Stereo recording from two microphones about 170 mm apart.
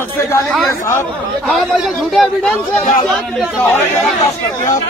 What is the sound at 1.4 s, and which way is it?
A man's voice, centre (ahead or behind).